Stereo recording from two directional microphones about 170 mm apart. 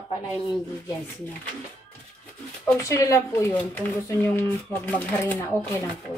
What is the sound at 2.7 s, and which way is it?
Speech, 15° left (ahead or behind).